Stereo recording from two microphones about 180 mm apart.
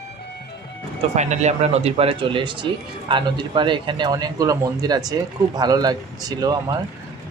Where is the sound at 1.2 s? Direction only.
40° right (ahead or behind).